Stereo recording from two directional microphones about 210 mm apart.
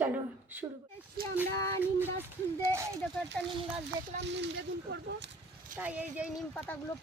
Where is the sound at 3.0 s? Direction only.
10° left (ahead or behind).